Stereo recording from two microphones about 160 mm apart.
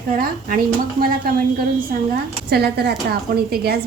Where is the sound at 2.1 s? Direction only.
85° right.